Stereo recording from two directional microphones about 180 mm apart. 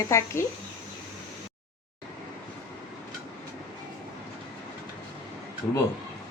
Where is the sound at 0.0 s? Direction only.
15° left (ahead or behind).